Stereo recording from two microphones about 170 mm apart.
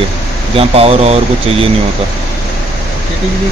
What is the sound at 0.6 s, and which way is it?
Speech, 35° right (ahead or behind).